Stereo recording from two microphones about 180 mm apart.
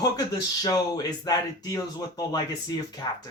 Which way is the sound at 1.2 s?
20° left (ahead or behind).